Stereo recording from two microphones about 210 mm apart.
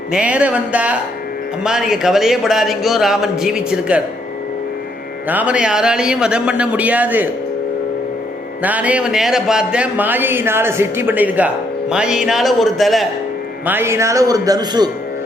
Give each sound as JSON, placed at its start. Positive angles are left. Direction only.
{"t": 0.1, "sound": "speech", "side_deg": -5}
{"t": 5.3, "sound": "speech", "side_deg": -5}
{"t": 8.6, "sound": "speech", "side_deg": -5}
{"t": 13.7, "sound": "speech", "side_deg": -10}